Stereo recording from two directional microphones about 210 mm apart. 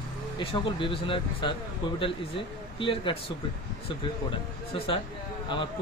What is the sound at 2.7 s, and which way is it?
Speech, 25° left (ahead or behind).